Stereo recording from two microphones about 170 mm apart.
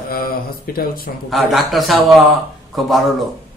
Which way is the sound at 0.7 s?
60° left (ahead or behind).